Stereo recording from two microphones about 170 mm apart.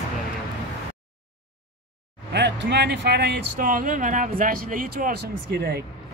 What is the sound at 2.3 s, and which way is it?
Speech, 85° right.